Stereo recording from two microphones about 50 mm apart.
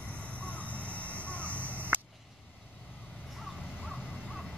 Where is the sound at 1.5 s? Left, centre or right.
Right.